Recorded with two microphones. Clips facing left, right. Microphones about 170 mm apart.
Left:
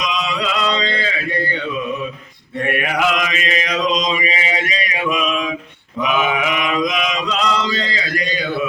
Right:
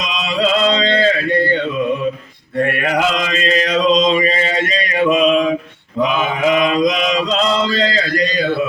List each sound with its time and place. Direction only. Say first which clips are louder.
0.0 s mantra: right 3 dB; 30° right (ahead or behind)
5.0 s mantra: right 8 dB; 30° right (ahead or behind)